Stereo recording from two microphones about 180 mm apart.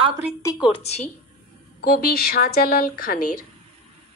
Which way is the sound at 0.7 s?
35° left (ahead or behind).